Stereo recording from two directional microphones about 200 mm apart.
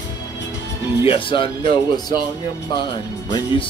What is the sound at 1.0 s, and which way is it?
Speech, 25° left (ahead or behind).